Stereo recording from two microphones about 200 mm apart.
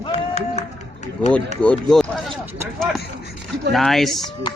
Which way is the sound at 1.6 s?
5° left (ahead or behind).